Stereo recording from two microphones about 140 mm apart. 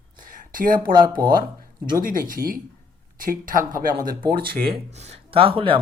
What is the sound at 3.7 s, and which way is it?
Speech, 85° right.